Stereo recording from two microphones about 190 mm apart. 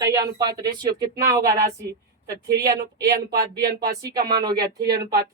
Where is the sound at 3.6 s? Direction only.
55° right (ahead or behind).